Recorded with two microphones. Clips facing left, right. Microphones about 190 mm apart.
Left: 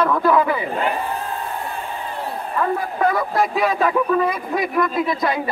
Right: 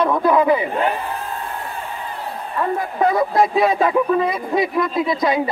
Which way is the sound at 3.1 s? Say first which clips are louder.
Right 3 dB; 20° right (ahead or behind).